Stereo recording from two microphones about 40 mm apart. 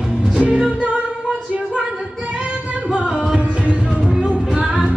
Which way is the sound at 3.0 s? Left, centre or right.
Right.